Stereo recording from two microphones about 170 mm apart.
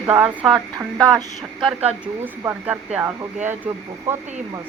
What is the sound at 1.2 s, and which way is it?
Speech, 20° right (ahead or behind).